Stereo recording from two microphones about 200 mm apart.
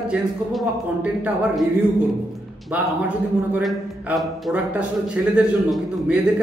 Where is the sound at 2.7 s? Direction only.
5° right (ahead or behind).